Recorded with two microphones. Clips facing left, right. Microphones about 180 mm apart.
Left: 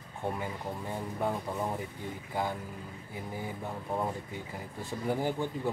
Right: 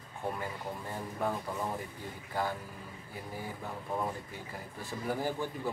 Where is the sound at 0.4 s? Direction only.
20° left (ahead or behind).